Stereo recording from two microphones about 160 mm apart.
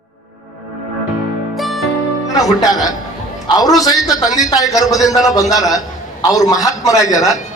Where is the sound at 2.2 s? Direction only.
20° left (ahead or behind).